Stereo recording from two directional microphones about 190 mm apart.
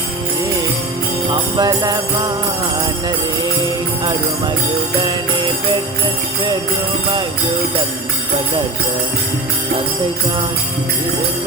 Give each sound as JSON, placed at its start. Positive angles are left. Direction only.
{"t": 1.3, "sound": "jingle bell", "side_deg": -20}